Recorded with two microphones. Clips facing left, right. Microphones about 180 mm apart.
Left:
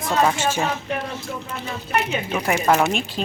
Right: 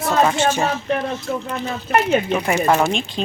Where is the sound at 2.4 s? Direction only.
Centre (ahead or behind).